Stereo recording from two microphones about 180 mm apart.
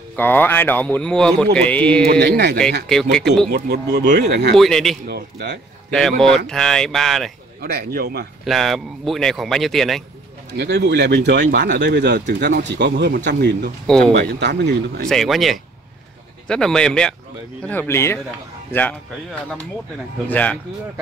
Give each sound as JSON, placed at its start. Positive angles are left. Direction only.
{"t": 0.1, "sound": "speech", "side_deg": 10}
{"t": 2.1, "sound": "speech", "side_deg": -65}
{"t": 2.9, "sound": "speech", "side_deg": 5}
{"t": 3.4, "sound": "speech", "side_deg": -60}
{"t": 4.6, "sound": "speech", "side_deg": 0}
{"t": 5.0, "sound": "speech", "side_deg": -60}
{"t": 5.9, "sound": "speech", "side_deg": 5}
{"t": 7.6, "sound": "speech", "side_deg": -60}
{"t": 8.5, "sound": "speech", "side_deg": 0}
{"t": 10.5, "sound": "speech", "side_deg": -70}
{"t": 13.8, "sound": "speech", "side_deg": 0}
{"t": 14.1, "sound": "speech", "side_deg": -70}
{"t": 15.0, "sound": "speech", "side_deg": 0}
{"t": 20.2, "sound": "speech", "side_deg": 10}